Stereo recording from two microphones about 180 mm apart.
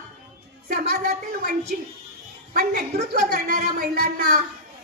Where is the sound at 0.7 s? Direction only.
60° right (ahead or behind).